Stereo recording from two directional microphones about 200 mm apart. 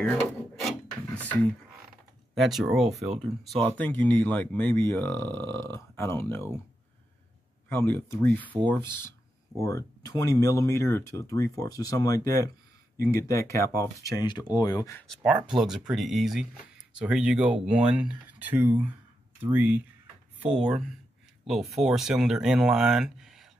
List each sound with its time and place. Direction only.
0.0 s drawer open or close: centre (ahead or behind)
2.3 s speech: centre (ahead or behind)
7.7 s speech: 10° left (ahead or behind)
15.0 s speech: 5° right (ahead or behind)